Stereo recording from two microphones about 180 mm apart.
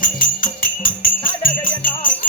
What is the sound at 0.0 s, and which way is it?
Music, 50° left (ahead or behind).